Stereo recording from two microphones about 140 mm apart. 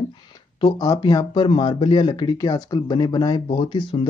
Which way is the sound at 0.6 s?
30° left (ahead or behind).